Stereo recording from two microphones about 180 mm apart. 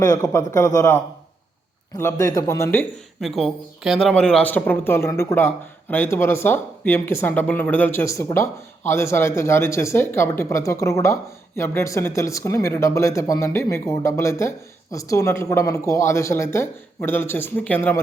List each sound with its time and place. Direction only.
0.0 s a man's voice: 20° left (ahead or behind)
2.0 s speech: 15° left (ahead or behind)
3.2 s speech: centre (ahead or behind)